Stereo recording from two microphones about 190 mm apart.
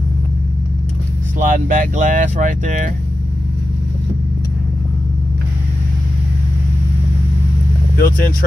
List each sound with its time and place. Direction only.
1.4 s speech: 45° right (ahead or behind)
8.0 s speech: 50° left (ahead or behind)